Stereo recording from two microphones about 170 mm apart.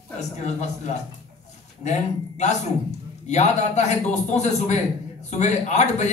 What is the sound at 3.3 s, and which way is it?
Speech, 45° left (ahead or behind).